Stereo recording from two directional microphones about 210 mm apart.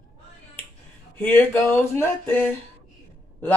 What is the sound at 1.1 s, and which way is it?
Speech, 10° left (ahead or behind).